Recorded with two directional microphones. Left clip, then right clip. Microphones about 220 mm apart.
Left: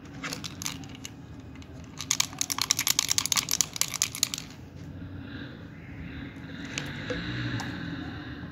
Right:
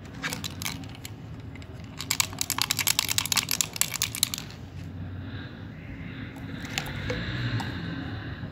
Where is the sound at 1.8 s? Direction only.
Centre (ahead or behind).